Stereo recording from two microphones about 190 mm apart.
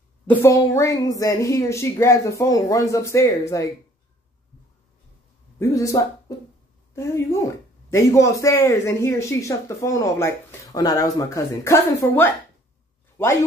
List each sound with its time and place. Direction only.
0.3 s speech: 15° left (ahead or behind)
5.6 s speech: 15° left (ahead or behind)